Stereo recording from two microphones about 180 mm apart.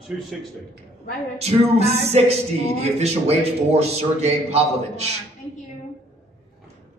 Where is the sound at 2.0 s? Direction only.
35° right (ahead or behind).